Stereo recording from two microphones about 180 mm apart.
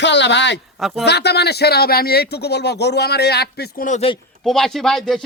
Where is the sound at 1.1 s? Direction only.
65° left (ahead or behind).